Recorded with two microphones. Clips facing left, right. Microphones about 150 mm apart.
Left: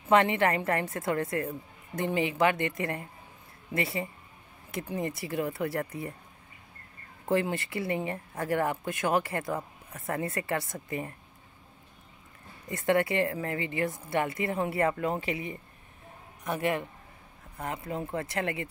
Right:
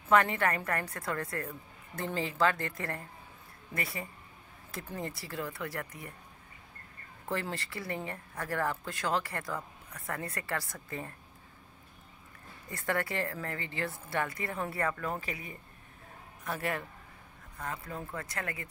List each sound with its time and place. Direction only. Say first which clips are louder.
0.1 s speech: left 3 dB; 25° left (ahead or behind)
7.2 s speech: left 8 dB; 20° left (ahead or behind)
12.6 s speech: left 7 dB; 20° left (ahead or behind)
16.4 s speech: left 6 dB; 20° left (ahead or behind)